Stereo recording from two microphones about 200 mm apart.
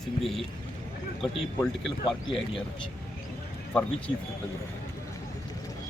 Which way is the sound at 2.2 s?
25° left (ahead or behind).